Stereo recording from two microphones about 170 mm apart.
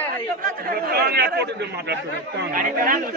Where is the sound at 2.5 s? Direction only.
55° right (ahead or behind).